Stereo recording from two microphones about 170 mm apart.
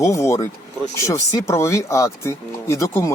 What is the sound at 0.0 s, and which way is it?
Speech, 15° left (ahead or behind).